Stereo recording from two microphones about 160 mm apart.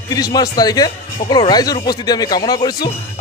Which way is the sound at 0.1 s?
25° left (ahead or behind).